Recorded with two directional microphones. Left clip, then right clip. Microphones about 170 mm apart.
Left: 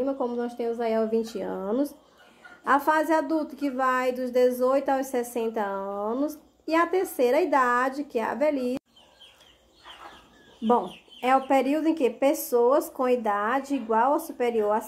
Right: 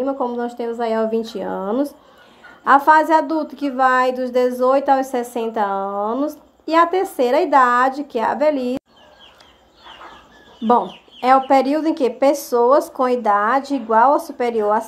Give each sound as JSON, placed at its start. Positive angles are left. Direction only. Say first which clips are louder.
{"t": 0.0, "sound": "a woman's voice", "louder": "right 6 dB", "side_deg": -10}
{"t": 10.7, "sound": "a woman's voice", "louder": "right 8 dB", "side_deg": -15}